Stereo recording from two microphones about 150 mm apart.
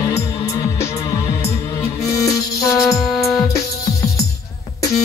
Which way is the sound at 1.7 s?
20° left (ahead or behind).